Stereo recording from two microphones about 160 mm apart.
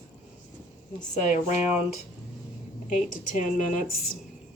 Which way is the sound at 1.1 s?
50° left (ahead or behind).